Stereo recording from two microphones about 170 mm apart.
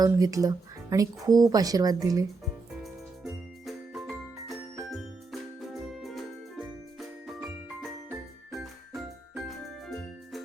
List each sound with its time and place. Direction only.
0.0 s speech: 20° right (ahead or behind)
3.2 s jingle bell: centre (ahead or behind)
8.5 s music: centre (ahead or behind)